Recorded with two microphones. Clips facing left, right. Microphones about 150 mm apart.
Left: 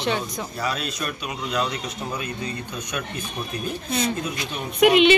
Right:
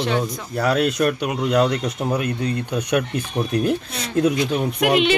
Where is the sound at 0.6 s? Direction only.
65° right (ahead or behind).